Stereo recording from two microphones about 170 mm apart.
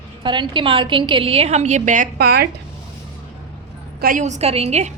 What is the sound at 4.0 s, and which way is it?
Speech, 55° right (ahead or behind).